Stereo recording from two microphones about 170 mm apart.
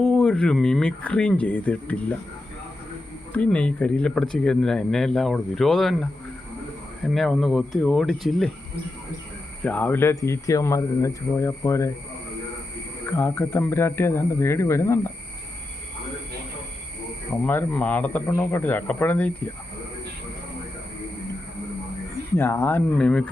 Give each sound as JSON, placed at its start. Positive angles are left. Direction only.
{"t": 0.0, "sound": "speech", "side_deg": 5}
{"t": 3.3, "sound": "speech", "side_deg": 5}
{"t": 9.6, "sound": "speech", "side_deg": 10}
{"t": 13.1, "sound": "speech", "side_deg": 10}
{"t": 17.4, "sound": "speech", "side_deg": 10}
{"t": 22.4, "sound": "speech", "side_deg": 15}